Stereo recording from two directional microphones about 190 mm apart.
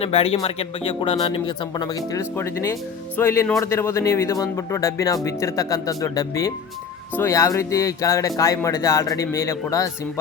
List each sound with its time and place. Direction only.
0.0 s speech: 30° left (ahead or behind)